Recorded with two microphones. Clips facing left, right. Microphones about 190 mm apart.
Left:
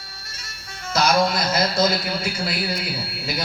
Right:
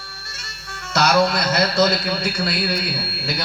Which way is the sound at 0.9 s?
70° right (ahead or behind).